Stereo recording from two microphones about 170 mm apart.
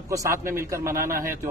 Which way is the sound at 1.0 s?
55° right (ahead or behind).